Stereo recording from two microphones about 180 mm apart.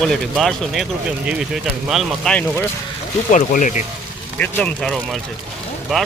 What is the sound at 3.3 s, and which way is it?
Speech, 45° left (ahead or behind).